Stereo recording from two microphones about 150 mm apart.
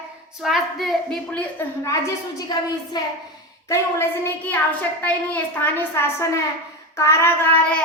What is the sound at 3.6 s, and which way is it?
A woman's voice, 20° left (ahead or behind).